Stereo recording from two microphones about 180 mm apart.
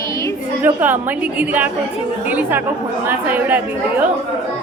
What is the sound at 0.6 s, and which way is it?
A woman's voice, 10° right (ahead or behind).